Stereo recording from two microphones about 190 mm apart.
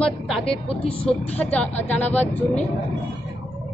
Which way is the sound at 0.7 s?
30° left (ahead or behind).